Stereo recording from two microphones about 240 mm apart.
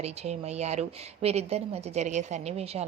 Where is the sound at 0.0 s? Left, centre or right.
Right.